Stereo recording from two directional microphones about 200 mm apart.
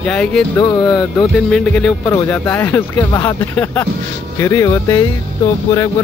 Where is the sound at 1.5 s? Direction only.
5° left (ahead or behind).